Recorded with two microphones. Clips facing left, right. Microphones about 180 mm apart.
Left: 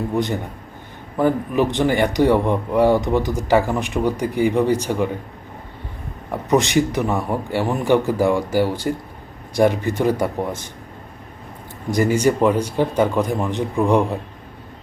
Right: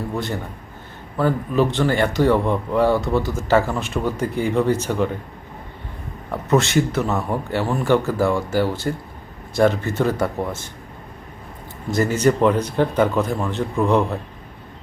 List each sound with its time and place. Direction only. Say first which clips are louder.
0.1 s a man's voice: left 4 dB; 15° left (ahead or behind)
6.3 s a man's voice: left 1 dB; 15° left (ahead or behind)
11.9 s a man's voice: left 1 dB; 10° left (ahead or behind)